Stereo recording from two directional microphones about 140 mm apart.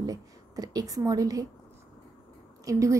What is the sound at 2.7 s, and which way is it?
Speech, 20° right (ahead or behind).